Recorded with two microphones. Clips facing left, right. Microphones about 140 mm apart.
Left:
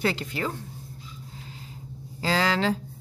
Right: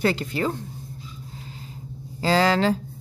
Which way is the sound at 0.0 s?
40° right (ahead or behind).